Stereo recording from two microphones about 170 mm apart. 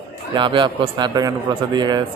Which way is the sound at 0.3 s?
30° right (ahead or behind).